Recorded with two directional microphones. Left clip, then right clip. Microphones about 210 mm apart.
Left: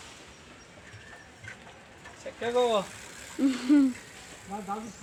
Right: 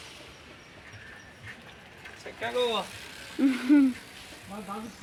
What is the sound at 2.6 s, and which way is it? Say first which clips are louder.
Speech: left 3 dB; 40° left (ahead or behind).